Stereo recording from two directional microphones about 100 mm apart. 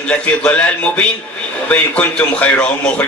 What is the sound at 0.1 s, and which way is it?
A man's voice, 10° left (ahead or behind).